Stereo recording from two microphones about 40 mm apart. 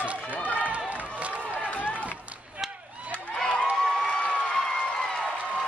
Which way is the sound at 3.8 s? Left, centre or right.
Left.